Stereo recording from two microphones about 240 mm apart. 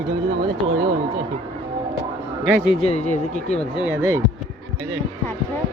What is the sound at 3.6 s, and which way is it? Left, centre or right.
Speech, centre.